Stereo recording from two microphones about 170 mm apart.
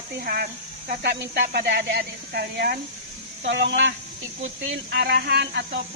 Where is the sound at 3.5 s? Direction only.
90° right.